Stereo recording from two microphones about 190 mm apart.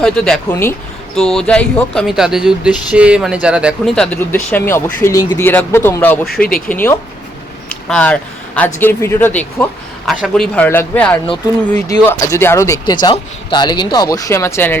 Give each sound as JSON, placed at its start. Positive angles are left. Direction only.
{"t": 0.0, "sound": "speech", "side_deg": 5}